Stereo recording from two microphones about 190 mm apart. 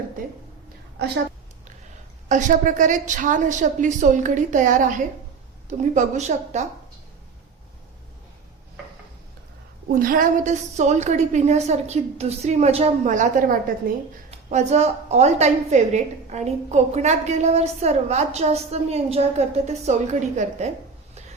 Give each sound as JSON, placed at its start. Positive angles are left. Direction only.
{"t": 2.3, "sound": "a woman's voice", "side_deg": -40}
{"t": 9.9, "sound": "a woman's voice", "side_deg": -45}